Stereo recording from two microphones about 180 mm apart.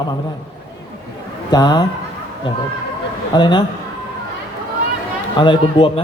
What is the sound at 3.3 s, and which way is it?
Music, 25° left (ahead or behind).